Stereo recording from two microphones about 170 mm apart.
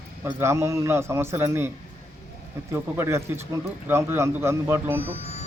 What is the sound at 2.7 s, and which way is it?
A man's voice, 15° right (ahead or behind).